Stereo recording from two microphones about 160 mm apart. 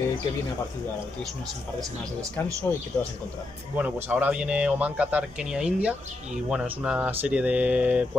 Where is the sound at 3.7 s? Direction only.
10° right (ahead or behind).